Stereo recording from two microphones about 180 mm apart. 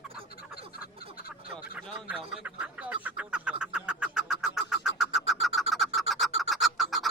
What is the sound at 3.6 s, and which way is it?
Vehicle, 5° right (ahead or behind).